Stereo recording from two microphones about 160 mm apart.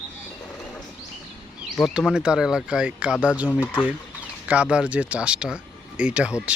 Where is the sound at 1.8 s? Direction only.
5° right (ahead or behind).